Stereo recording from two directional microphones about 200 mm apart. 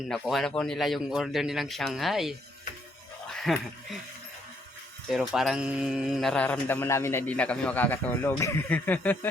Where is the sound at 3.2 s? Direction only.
Centre (ahead or behind).